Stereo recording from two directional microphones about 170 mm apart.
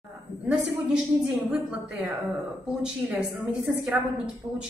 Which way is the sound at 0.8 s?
5° right (ahead or behind).